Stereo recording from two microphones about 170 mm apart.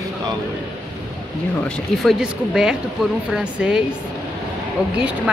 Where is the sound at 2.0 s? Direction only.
5° right (ahead or behind).